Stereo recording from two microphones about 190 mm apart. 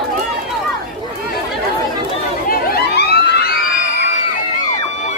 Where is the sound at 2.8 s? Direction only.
60° left (ahead or behind).